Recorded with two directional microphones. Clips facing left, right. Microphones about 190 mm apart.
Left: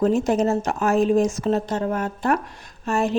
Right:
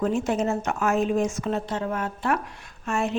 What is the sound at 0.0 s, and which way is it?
Speech, 40° left (ahead or behind).